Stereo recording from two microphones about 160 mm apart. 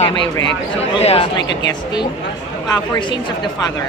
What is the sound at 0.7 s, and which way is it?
Speech, 40° left (ahead or behind).